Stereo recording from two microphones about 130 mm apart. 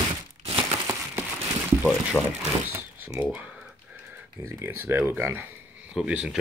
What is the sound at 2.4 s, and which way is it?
Speech, 20° right (ahead or behind).